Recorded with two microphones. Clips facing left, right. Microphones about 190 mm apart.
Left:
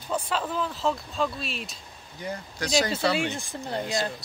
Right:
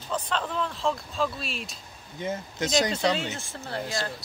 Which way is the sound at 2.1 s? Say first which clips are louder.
Right 3 dB; 20° right (ahead or behind).